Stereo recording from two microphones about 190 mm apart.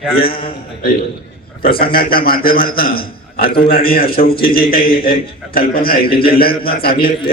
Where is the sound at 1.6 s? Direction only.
50° left (ahead or behind).